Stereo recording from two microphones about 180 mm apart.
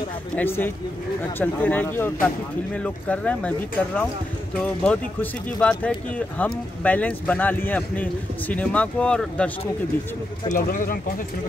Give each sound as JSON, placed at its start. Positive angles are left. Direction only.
{"t": 0.4, "sound": "speech", "side_deg": 10}
{"t": 10.5, "sound": "speech", "side_deg": 50}